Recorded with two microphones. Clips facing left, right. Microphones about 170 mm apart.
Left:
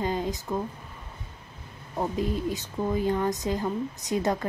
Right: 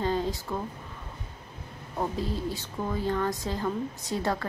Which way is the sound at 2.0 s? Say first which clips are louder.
Left 3 dB; 15° left (ahead or behind).